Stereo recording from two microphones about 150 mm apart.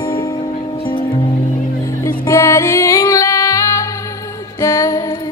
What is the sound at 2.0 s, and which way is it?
Music, 20° left (ahead or behind).